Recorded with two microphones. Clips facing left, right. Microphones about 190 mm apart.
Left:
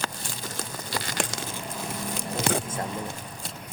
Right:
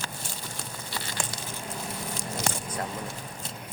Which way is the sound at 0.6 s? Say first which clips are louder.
Left 6 dB; 90° left.